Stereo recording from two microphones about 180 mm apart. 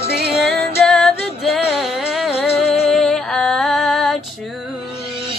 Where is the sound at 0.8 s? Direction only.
5° left (ahead or behind).